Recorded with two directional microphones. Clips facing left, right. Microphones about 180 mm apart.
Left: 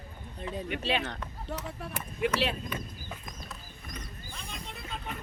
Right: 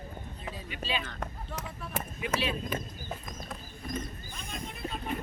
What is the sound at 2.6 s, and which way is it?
Chicken, 45° right (ahead or behind).